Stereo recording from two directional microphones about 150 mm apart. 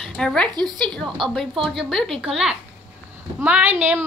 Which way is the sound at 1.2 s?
35° right (ahead or behind).